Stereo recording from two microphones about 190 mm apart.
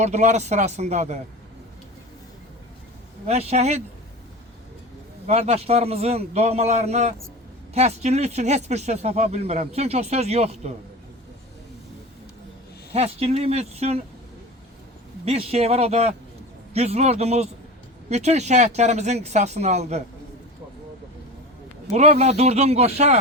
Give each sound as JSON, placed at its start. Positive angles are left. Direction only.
{"t": 0.0, "sound": "speech", "side_deg": -35}
{"t": 3.2, "sound": "speech", "side_deg": -35}
{"t": 5.2, "sound": "speech", "side_deg": -35}
{"t": 12.9, "sound": "speech", "side_deg": -30}
{"t": 15.4, "sound": "speech", "side_deg": -35}
{"t": 21.8, "sound": "speech", "side_deg": -35}